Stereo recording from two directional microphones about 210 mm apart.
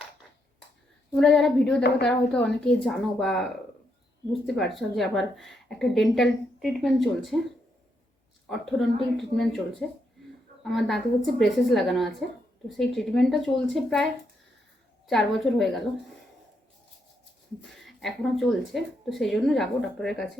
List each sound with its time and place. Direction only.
1.1 s a woman's voice: 5° left (ahead or behind)
9.1 s a woman's voice: centre (ahead or behind)
17.6 s a woman's voice: centre (ahead or behind)